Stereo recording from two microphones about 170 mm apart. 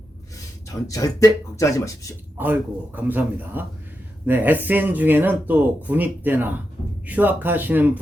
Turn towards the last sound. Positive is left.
turn(degrees=-10)  # may be behind; listen again after turning